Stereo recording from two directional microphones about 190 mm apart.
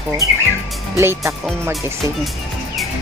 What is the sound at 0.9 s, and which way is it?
Speech, 15° right (ahead or behind).